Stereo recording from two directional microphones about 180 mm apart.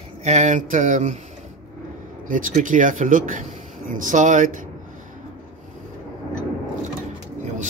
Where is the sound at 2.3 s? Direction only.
45° right (ahead or behind).